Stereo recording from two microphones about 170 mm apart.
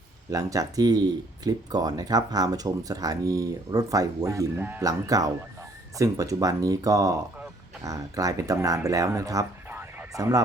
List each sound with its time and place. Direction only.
0.3 s speech: 20° right (ahead or behind)